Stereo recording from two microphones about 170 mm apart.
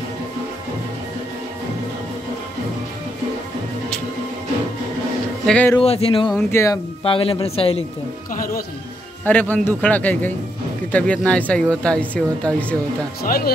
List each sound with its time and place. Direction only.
5.5 s speech: 10° left (ahead or behind)
5.8 s speech: 35° left (ahead or behind)
6.5 s speech: 15° left (ahead or behind)
7.0 s a man's voice: 30° left (ahead or behind)
9.2 s speech: 10° left (ahead or behind)
13.2 s speech: 60° left (ahead or behind)